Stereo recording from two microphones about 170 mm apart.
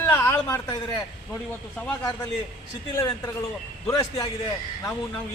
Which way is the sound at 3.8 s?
20° left (ahead or behind).